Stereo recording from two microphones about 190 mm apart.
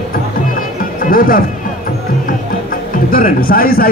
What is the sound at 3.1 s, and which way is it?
Speech, 50° left (ahead or behind).